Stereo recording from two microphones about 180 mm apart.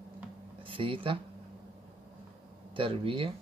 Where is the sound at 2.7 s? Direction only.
30° right (ahead or behind).